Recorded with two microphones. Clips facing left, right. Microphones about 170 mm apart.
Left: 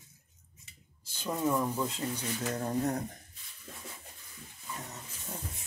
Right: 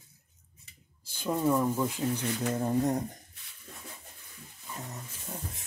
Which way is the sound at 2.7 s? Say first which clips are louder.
Right 3 dB; 10° right (ahead or behind).